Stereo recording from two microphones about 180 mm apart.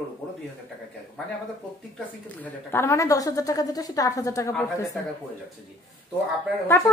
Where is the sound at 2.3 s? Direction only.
15° left (ahead or behind).